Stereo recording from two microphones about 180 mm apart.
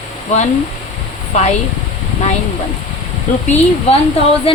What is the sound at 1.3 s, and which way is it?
Speech, 35° left (ahead or behind).